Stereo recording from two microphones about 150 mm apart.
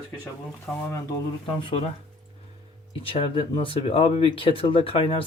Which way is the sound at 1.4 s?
35° left (ahead or behind).